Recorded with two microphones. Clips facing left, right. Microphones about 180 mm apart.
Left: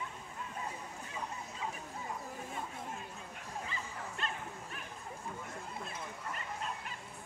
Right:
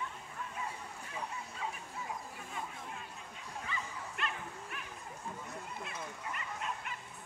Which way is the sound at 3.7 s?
35° left (ahead or behind).